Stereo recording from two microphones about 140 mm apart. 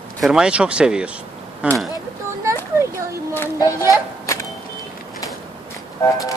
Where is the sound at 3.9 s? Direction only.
20° left (ahead or behind).